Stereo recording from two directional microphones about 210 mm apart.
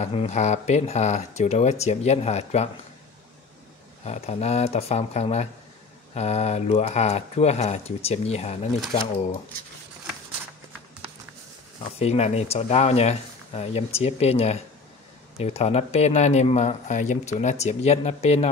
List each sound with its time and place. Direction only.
0.0 s speech: 30° left (ahead or behind)
4.0 s speech: 30° left (ahead or behind)
11.9 s speech: 30° left (ahead or behind)